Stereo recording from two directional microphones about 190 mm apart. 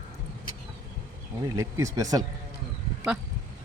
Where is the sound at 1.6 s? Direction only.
15° right (ahead or behind).